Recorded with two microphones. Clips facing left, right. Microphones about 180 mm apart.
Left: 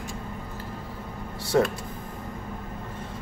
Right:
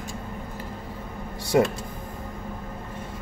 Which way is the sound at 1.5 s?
15° right (ahead or behind).